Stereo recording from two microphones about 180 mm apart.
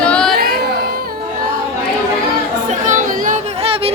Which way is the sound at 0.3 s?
60° right (ahead or behind).